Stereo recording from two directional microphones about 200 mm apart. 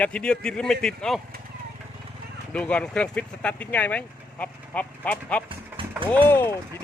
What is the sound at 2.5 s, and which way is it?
Speech, 5° left (ahead or behind).